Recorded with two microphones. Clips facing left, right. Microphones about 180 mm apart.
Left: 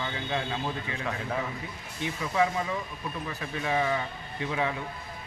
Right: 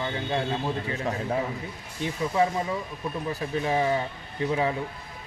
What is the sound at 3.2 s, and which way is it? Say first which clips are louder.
Speech: right 5 dB; 30° right (ahead or behind).